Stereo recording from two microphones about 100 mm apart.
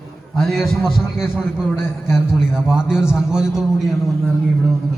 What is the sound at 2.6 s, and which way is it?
A man's voice, 10° right (ahead or behind).